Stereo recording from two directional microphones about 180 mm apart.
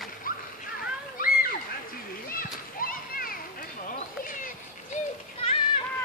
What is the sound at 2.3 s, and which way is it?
Children playing, 50° left (ahead or behind).